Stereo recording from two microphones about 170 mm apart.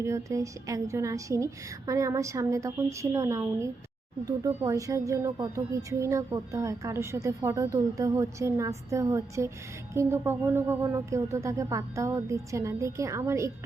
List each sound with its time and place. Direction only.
0.0 s speech: 15° right (ahead or behind)